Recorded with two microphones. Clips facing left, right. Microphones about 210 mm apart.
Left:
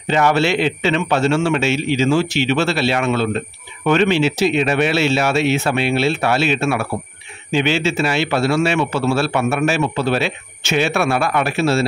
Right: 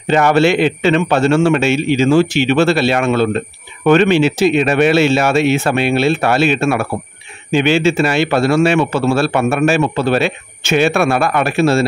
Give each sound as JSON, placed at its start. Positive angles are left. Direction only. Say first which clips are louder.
{"t": 0.1, "sound": "a man's voice", "louder": "right 4 dB", "side_deg": -50}